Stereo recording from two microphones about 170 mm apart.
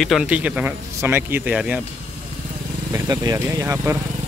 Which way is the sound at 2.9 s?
20° right (ahead or behind).